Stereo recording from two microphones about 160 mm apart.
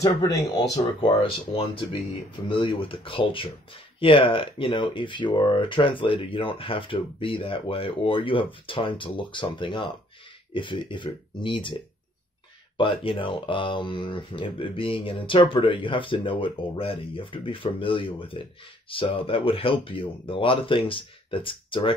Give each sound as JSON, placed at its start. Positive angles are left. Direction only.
{"t": 0.0, "sound": "speech", "side_deg": 20}
{"t": 1.0, "sound": "speech", "side_deg": 35}
{"t": 12.7, "sound": "speech", "side_deg": 30}